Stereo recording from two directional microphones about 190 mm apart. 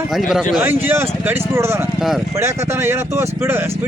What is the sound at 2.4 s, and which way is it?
Speech, 15° right (ahead or behind).